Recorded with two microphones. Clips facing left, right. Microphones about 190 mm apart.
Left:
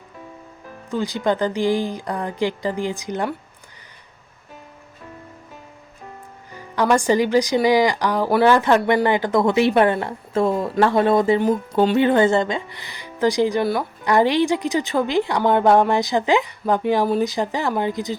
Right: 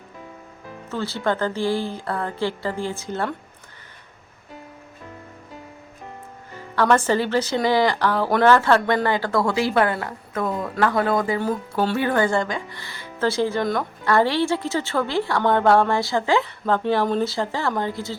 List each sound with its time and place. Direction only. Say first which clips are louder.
0.9 s a woman's voice: left 3 dB; 15° left (ahead or behind)
6.7 s a woman's voice: left 2 dB; 15° left (ahead or behind)